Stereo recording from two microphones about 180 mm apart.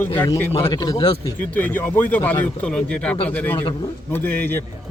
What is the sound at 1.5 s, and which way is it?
A man's voice, 10° left (ahead or behind).